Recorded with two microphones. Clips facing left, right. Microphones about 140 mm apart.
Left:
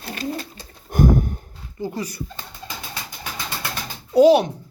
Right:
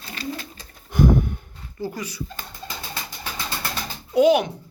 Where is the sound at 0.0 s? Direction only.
50° left (ahead or behind).